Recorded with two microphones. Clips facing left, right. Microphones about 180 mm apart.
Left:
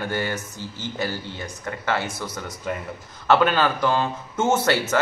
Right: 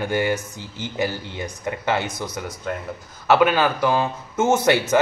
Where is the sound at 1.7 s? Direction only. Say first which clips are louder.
Right 2 dB; 20° right (ahead or behind).